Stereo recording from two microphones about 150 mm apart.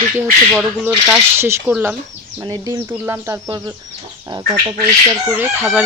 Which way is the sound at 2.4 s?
25° right (ahead or behind).